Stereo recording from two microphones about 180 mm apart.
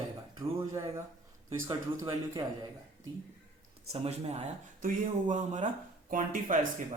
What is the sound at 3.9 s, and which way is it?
A man's voice, 35° right (ahead or behind).